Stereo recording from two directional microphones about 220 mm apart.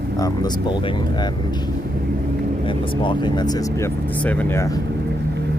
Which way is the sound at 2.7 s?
20° left (ahead or behind).